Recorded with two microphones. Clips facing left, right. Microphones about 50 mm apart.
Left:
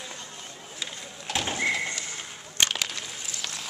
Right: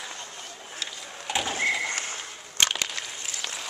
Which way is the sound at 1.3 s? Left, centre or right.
Centre.